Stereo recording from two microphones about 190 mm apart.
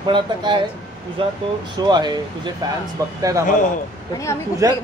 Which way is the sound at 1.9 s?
20° right (ahead or behind).